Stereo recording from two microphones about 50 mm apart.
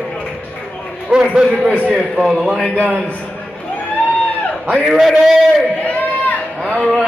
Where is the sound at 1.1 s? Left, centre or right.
Right.